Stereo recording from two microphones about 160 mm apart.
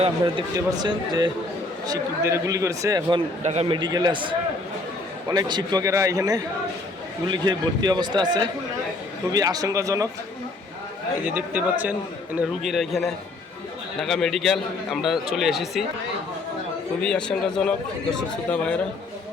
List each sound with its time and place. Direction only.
0.5 s a man's voice: 25° right (ahead or behind)
3.4 s a man's voice: 40° right (ahead or behind)
3.8 s a man's voice: 25° right (ahead or behind)
11.3 s a man's voice: 10° right (ahead or behind)
17.0 s a man's voice: 5° left (ahead or behind)